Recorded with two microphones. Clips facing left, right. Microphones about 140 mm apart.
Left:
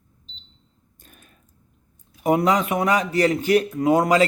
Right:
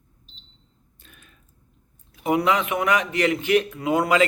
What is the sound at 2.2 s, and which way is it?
A man's voice, 40° left (ahead or behind).